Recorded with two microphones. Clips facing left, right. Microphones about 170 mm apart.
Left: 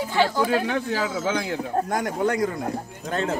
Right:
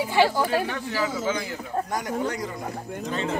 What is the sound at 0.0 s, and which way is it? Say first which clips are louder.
Speech: right 1 dB; 10° right (ahead or behind).